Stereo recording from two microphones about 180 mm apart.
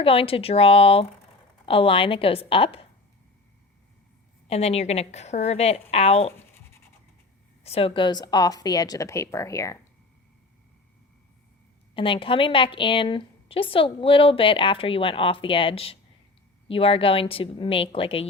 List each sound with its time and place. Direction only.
0.0 s a woman's voice: 30° left (ahead or behind)
4.4 s a woman's voice: 35° left (ahead or behind)
7.6 s a woman's voice: 35° left (ahead or behind); by 9.7 s 15° left (ahead or behind)
11.9 s a woman's voice: 30° left (ahead or behind)